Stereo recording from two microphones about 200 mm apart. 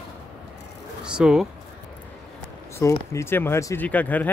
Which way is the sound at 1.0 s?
5° right (ahead or behind).